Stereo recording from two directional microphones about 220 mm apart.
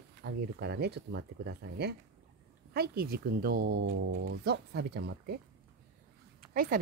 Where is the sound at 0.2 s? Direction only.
50° right (ahead or behind).